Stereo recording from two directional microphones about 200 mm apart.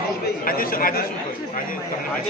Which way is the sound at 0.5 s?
45° left (ahead or behind).